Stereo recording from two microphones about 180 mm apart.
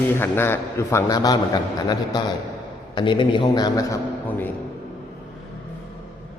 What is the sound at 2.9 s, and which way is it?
A man's voice, 25° left (ahead or behind).